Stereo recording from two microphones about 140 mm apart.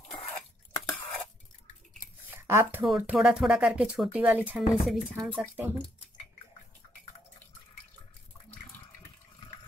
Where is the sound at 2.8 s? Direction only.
5° right (ahead or behind).